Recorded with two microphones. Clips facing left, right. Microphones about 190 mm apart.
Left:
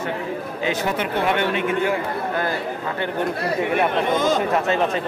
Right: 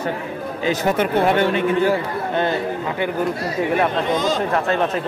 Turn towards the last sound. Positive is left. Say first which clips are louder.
# left 1 dB
turn(degrees=50)  # may be behind; listen again after turning